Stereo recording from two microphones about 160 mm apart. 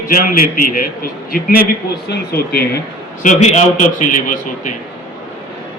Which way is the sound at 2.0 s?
80° left.